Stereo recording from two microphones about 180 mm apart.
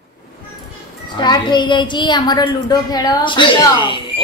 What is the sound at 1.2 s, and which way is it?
A woman's voice, 25° left (ahead or behind).